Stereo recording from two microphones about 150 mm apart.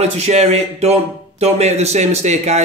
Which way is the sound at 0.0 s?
45° right (ahead or behind).